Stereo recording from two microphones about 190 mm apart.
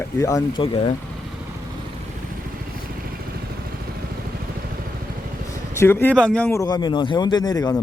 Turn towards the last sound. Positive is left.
turn(degrees=20)  # may be behind; listen again after turning